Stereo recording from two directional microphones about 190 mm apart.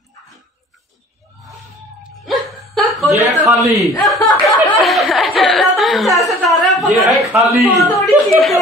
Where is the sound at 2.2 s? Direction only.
Centre (ahead or behind).